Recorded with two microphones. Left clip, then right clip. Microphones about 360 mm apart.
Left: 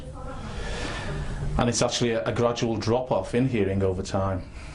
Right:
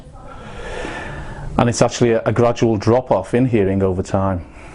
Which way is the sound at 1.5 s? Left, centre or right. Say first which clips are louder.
Right 8 dB; right.